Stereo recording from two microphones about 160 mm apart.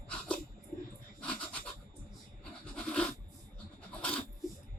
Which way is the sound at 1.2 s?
10° left (ahead or behind).